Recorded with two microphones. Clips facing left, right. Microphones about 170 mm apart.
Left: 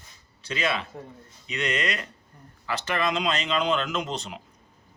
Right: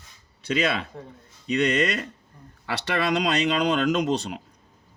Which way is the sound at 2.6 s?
70° right (ahead or behind).